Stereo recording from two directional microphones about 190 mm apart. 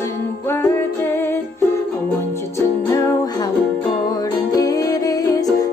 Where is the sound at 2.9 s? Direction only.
20° left (ahead or behind).